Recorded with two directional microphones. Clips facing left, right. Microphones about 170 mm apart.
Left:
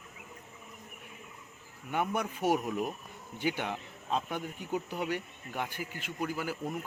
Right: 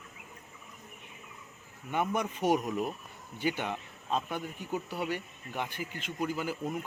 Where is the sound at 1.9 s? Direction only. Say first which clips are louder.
Right 1 dB; 10° left (ahead or behind).